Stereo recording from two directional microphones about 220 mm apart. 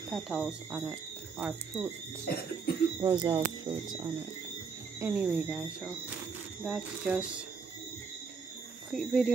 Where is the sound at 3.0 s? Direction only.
20° right (ahead or behind).